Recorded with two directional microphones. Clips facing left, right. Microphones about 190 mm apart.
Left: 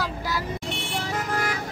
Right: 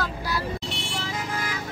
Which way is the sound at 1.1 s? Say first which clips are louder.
Left 5 dB; 60° left (ahead or behind).